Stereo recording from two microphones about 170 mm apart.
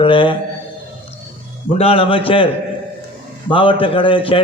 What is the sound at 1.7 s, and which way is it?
Speech, 35° left (ahead or behind).